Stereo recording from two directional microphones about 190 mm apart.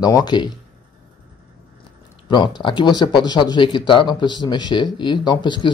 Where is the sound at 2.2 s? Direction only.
25° left (ahead or behind).